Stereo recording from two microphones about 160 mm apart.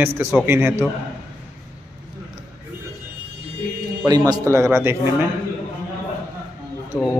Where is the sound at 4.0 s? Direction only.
25° right (ahead or behind).